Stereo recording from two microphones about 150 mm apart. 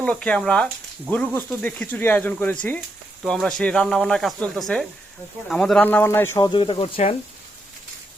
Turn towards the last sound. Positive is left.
turn(degrees=40)  # may be behind; listen again after turning